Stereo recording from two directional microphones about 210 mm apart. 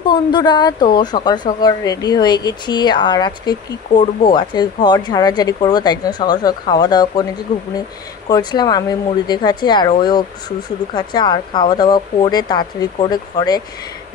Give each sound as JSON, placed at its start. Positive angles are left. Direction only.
{"t": 0.0, "sound": "speech", "side_deg": 20}
{"t": 7.5, "sound": "speech", "side_deg": 35}
{"t": 8.3, "sound": "speech", "side_deg": 20}